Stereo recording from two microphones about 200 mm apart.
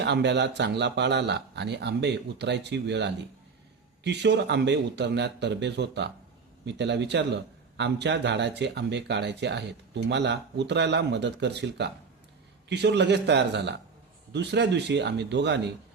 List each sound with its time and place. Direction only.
0.0 s a man's voice: 60° right (ahead or behind)